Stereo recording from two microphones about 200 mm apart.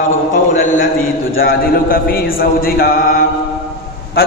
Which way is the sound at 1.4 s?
45° left (ahead or behind).